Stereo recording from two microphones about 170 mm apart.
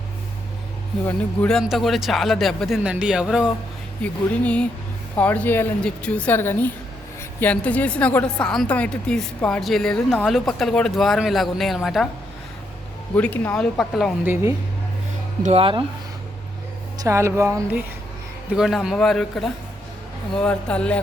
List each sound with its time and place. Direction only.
1.0 s a woman's voice: 5° left (ahead or behind)
13.1 s a woman's voice: 10° left (ahead or behind)
15.4 s speech: 35° right (ahead or behind)
17.0 s speech: 15° right (ahead or behind)
18.5 s a woman's voice: centre (ahead or behind)